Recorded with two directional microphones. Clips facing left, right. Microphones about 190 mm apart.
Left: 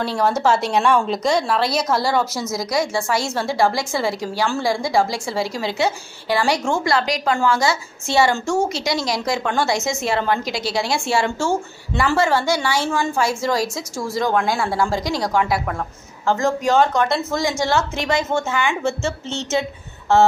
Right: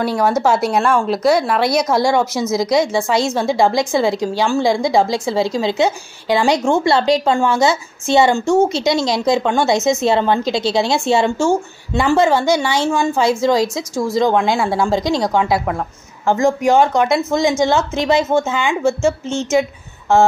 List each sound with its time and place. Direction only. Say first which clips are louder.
0.0 s a woman's voice: right 3 dB; 10° right (ahead or behind)